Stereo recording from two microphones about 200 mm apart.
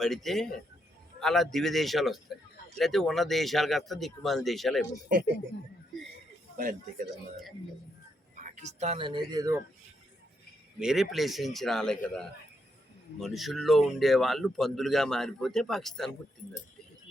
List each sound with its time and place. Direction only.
0.0 s speech: centre (ahead or behind)
8.4 s speech: 40° right (ahead or behind); by 9.6 s 20° right (ahead or behind)
10.8 s speech: centre (ahead or behind)